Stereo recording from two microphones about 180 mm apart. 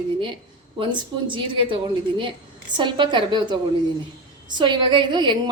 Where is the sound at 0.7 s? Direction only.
25° right (ahead or behind).